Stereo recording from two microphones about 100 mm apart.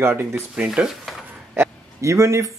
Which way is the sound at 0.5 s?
10° right (ahead or behind).